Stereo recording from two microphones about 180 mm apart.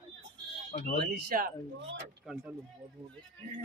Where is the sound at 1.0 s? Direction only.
50° right (ahead or behind).